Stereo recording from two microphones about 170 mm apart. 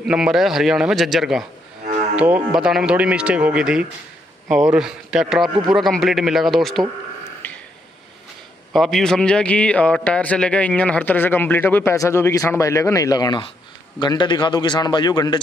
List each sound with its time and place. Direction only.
0.0 s a man's voice: 5° right (ahead or behind)
7.4 s a sound: 10° left (ahead or behind)
8.7 s a man's voice: centre (ahead or behind); by 15.4 s 25° left (ahead or behind)